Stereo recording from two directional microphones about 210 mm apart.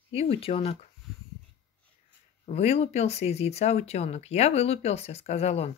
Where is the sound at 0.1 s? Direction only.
25° left (ahead or behind).